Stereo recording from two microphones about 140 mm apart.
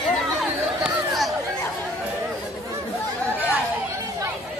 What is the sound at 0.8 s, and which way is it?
Chatter, centre (ahead or behind).